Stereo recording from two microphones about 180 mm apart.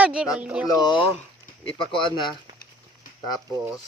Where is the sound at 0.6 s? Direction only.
20° left (ahead or behind).